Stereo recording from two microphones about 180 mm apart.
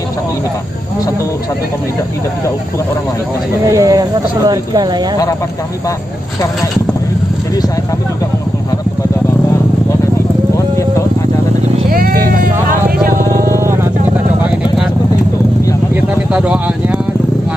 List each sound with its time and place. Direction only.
3.6 s speech: 20° right (ahead or behind)
11.9 s sheep: 55° right (ahead or behind)
13.0 s music: 55° right (ahead or behind)
13.6 s vehicle: 15° right (ahead or behind)
15.9 s a sound: 5° right (ahead or behind)